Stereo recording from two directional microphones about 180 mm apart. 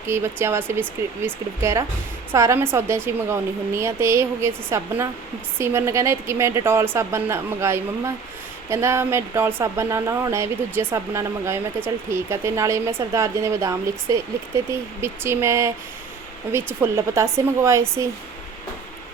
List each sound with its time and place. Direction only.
0.1 s speech: 15° right (ahead or behind)